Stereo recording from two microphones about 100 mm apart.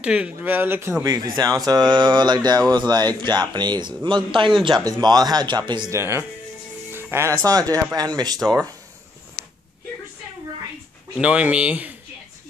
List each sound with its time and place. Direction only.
0.0 s speech: 10° right (ahead or behind)
1.0 s a man's voice: 40° right (ahead or behind); by 4.6 s 55° right (ahead or behind)
4.6 s a man's voice: 45° right (ahead or behind)
5.9 s speech: 25° right (ahead or behind)
11.1 s speech: 10° right (ahead or behind)